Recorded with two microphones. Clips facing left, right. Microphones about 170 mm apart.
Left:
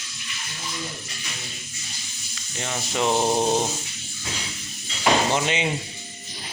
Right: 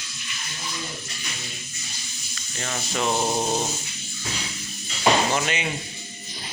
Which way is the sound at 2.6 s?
15° left (ahead or behind).